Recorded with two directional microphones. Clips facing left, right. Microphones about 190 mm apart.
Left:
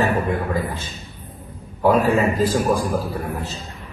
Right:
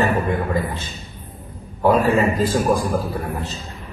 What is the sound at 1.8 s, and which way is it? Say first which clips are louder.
A man's voice: even; centre (ahead or behind).